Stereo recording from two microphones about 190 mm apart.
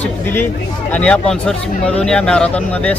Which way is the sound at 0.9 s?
5° left (ahead or behind).